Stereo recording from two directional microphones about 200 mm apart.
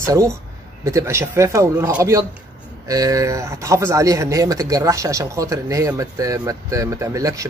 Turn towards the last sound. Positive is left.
turn(degrees=-15)  # may be behind; listen again after turning